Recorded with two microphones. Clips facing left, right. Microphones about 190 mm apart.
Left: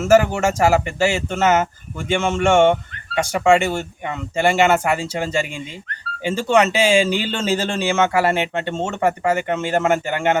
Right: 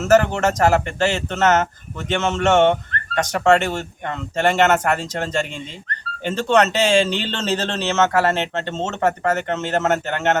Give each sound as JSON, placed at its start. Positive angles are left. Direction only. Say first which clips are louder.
{"t": 0.0, "sound": "speech", "louder": "left 1 dB", "side_deg": 10}